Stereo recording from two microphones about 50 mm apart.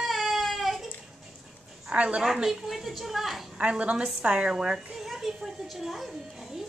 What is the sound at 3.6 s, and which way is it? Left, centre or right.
A woman's voice, right.